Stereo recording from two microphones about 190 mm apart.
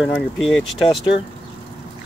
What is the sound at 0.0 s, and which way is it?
Speech, centre (ahead or behind).